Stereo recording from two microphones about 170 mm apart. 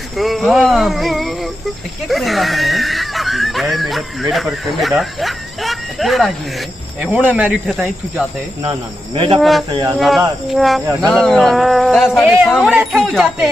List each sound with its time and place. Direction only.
0.2 s speech: centre (ahead or behind)
8.6 s speech: 30° right (ahead or behind)
9.4 s speech: centre (ahead or behind)
9.7 s speech: 25° right (ahead or behind)
9.9 s speech: centre (ahead or behind)